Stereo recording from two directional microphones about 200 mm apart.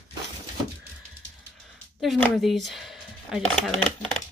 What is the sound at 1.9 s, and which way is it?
Speech, centre (ahead or behind).